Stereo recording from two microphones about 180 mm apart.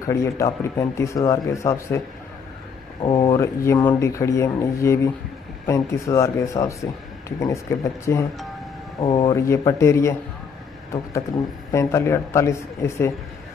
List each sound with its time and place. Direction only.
0.0 s speech: 15° left (ahead or behind)
3.0 s speech: 25° left (ahead or behind)
3.3 s speech: 15° left (ahead or behind)
9.0 s speech: 30° left (ahead or behind)
9.3 s speech: 15° left (ahead or behind)
11.7 s speech: 15° left (ahead or behind)